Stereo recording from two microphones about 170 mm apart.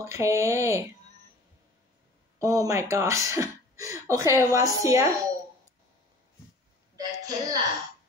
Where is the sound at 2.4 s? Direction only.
20° right (ahead or behind).